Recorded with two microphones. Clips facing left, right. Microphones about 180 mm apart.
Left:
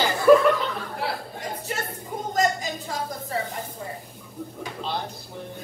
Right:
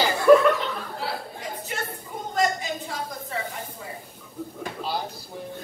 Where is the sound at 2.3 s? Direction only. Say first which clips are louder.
Even; 40° left (ahead or behind).